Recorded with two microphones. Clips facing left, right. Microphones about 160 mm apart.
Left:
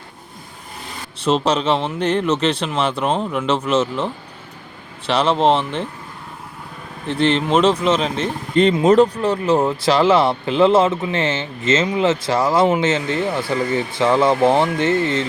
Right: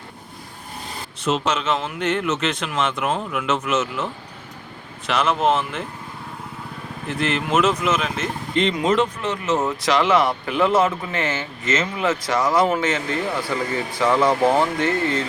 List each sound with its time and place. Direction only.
1.2 s speech: 35° left (ahead or behind)
7.1 s speech: 30° left (ahead or behind)